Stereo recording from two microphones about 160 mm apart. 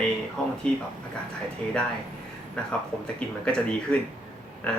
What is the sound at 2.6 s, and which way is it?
Speech, 5° left (ahead or behind).